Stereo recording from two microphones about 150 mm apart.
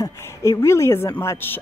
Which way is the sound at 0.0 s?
20° left (ahead or behind).